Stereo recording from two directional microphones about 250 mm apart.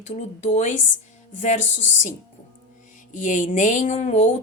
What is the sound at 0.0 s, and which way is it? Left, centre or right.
Speech, left.